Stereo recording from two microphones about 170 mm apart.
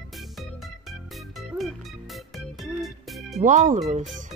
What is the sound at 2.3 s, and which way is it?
Music, centre (ahead or behind).